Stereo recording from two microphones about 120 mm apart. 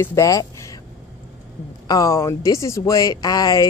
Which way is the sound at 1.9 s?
30° left (ahead or behind).